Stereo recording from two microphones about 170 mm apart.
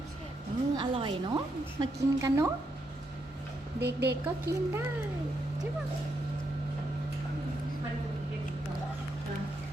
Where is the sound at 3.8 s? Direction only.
75° right (ahead or behind).